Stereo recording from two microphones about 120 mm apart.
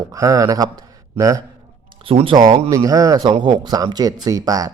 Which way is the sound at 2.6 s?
30° right (ahead or behind).